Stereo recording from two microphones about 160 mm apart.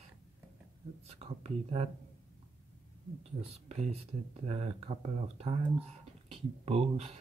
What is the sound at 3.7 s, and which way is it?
Speech, 45° right (ahead or behind).